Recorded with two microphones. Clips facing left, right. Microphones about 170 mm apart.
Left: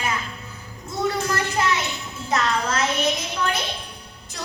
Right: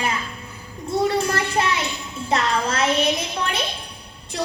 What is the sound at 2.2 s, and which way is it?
Music, 30° right (ahead or behind).